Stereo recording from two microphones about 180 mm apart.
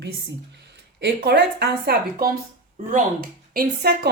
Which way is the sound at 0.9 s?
70° right (ahead or behind).